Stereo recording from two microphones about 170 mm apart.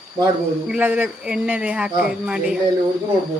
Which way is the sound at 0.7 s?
10° right (ahead or behind).